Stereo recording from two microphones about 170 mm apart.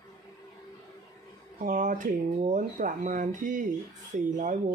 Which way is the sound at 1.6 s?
50° right (ahead or behind).